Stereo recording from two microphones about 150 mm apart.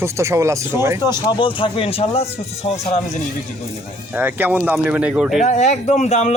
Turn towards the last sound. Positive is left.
turn(degrees=45)  # may be behind; listen again after turning